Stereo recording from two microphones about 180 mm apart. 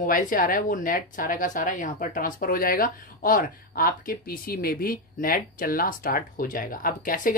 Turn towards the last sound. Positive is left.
turn(degrees=50)  # may be behind; listen again after turning